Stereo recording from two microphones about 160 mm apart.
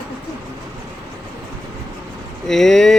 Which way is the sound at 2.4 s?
Centre (ahead or behind).